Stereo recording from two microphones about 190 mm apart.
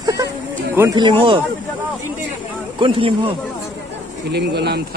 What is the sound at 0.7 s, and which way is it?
Speech, 20° right (ahead or behind).